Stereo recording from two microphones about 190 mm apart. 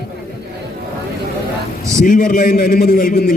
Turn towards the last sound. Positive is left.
turn(degrees=45)  # may be behind; listen again after turning